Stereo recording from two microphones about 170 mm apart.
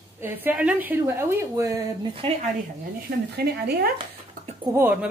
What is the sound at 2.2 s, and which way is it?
Speech, 30° right (ahead or behind).